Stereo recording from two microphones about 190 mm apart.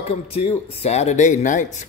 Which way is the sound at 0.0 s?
35° left (ahead or behind).